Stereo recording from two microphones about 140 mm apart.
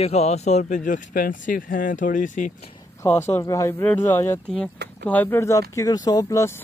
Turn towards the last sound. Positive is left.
turn(degrees=20)  # may be behind; listen again after turning